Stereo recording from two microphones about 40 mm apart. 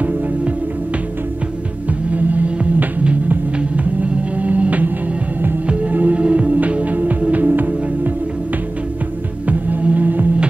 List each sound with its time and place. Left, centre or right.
2.0 s hum: right
3.5 s music: right
9.5 s organ: right